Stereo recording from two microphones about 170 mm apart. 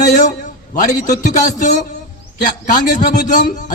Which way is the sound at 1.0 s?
50° left (ahead or behind).